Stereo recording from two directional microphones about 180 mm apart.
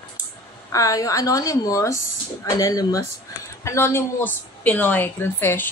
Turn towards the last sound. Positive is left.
turn(degrees=10)  # may be behind; listen again after turning